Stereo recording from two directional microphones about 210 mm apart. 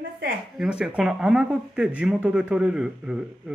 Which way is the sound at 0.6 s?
5° right (ahead or behind).